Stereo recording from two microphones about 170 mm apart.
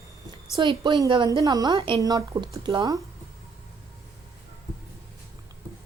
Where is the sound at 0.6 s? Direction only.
25° right (ahead or behind).